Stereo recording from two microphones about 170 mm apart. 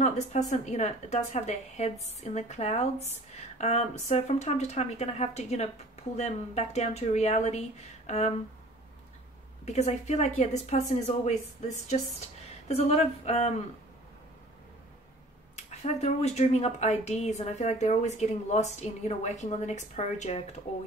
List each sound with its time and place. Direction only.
0.0 s a woman's voice: 45° left (ahead or behind)
9.7 s a woman's voice: 40° left (ahead or behind)
15.5 s a woman's voice: 40° left (ahead or behind)